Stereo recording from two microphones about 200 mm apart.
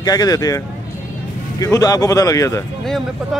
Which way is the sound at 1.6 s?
15° left (ahead or behind).